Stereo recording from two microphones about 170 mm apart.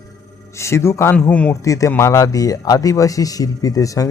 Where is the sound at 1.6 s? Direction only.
20° left (ahead or behind).